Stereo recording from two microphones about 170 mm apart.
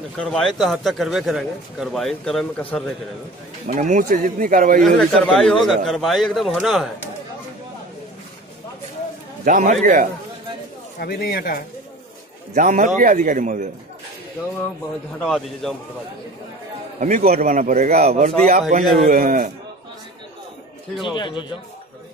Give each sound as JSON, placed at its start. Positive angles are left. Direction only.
{"t": 0.2, "sound": "speech", "side_deg": 5}
{"t": 3.6, "sound": "a man's voice", "side_deg": -50}
{"t": 4.8, "sound": "speech", "side_deg": 5}
{"t": 9.4, "sound": "a man's voice", "side_deg": -55}
{"t": 11.0, "sound": "speech", "side_deg": 60}
{"t": 12.5, "sound": "a man's voice", "side_deg": -45}
{"t": 15.1, "sound": "speech", "side_deg": 5}
{"t": 17.0, "sound": "a man's voice", "side_deg": -45}
{"t": 21.0, "sound": "speech", "side_deg": 25}